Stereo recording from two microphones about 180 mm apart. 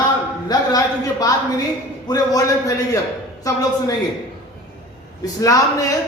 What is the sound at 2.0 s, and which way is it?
Speech, 20° left (ahead or behind).